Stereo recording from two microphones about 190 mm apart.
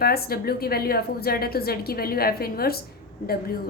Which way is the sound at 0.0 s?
55° left (ahead or behind).